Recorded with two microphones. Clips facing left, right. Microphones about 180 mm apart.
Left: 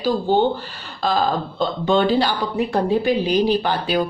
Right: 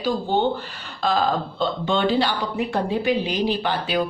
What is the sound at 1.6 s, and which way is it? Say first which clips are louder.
A woman's voice: left 4 dB; 40° left (ahead or behind).